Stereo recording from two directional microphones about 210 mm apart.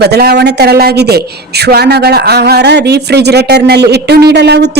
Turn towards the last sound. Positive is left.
turn(degrees=-55)  # may be behind; listen again after turning